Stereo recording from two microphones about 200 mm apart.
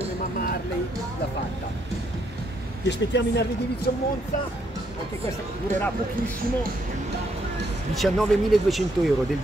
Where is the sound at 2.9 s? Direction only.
60° left (ahead or behind).